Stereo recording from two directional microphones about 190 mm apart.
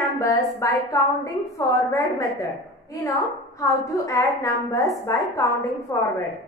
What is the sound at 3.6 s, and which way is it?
A woman's voice, 15° left (ahead or behind).